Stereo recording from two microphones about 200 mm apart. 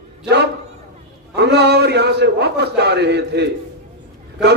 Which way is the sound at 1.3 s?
60° right (ahead or behind).